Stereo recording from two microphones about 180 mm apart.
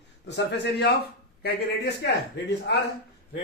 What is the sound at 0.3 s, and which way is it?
Speech, 70° left (ahead or behind).